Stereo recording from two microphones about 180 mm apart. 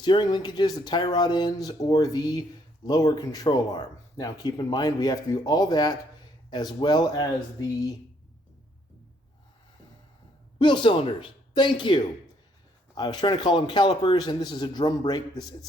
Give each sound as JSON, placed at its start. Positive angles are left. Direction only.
{"t": 0.0, "sound": "speech", "side_deg": 25}
{"t": 10.6, "sound": "speech", "side_deg": 25}